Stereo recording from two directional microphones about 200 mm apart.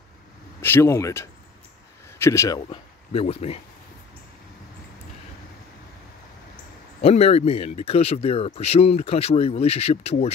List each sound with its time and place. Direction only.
0.6 s speech: 10° left (ahead or behind)
2.7 s speech: 30° left (ahead or behind)
7.0 s speech: 30° left (ahead or behind)